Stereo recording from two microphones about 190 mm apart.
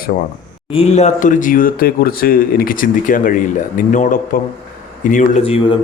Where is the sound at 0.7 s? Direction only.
30° left (ahead or behind).